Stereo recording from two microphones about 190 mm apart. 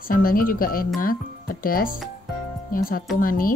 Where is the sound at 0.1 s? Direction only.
50° left (ahead or behind).